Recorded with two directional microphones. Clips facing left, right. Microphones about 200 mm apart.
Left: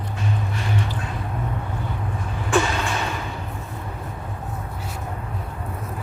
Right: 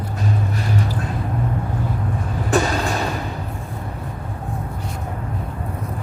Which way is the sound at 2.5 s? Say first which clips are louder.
Right 2 dB; 40° right (ahead or behind).